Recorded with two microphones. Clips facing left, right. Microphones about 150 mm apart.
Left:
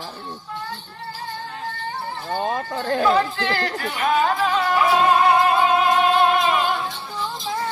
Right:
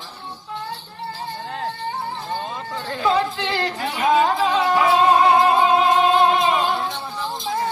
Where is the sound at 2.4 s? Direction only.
50° left (ahead or behind).